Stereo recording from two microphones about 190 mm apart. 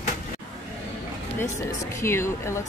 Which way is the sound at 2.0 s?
15° left (ahead or behind).